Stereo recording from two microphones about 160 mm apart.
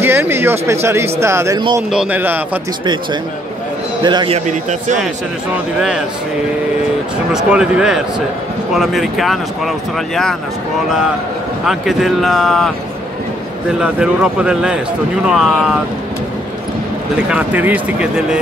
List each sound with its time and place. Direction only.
0.0 s speech: 15° right (ahead or behind)
4.0 s a man's voice: 30° right (ahead or behind)
4.5 s a man's voice: 50° right (ahead or behind)
5.8 s speech: 5° right (ahead or behind)
7.3 s speech: 5° right (ahead or behind)
11.6 s speech: centre (ahead or behind)
17.3 s speech: 10° right (ahead or behind)